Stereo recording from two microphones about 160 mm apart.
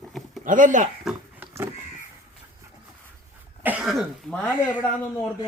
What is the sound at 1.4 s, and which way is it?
Crow, 15° right (ahead or behind).